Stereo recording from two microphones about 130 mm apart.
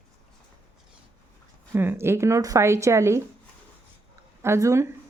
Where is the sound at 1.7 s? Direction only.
15° right (ahead or behind).